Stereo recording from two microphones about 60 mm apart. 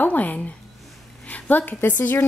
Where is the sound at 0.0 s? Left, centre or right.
Left.